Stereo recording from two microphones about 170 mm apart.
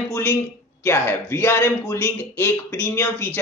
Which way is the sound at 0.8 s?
15° left (ahead or behind).